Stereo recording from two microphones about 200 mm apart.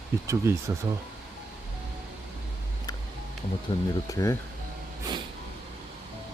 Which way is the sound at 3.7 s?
25° left (ahead or behind).